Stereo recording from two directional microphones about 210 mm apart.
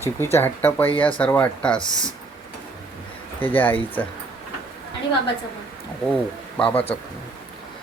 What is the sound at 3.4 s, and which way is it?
Speech, 10° left (ahead or behind).